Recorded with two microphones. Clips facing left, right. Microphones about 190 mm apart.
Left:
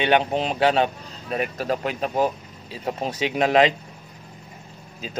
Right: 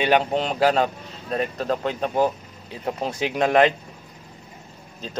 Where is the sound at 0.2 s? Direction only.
15° left (ahead or behind).